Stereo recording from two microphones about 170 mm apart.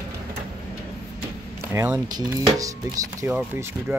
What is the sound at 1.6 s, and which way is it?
Speech, 15° right (ahead or behind).